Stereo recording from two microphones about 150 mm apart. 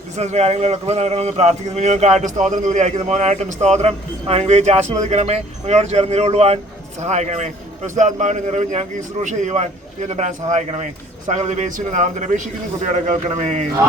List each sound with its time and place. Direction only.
0.2 s a man's voice: 45° right (ahead or behind)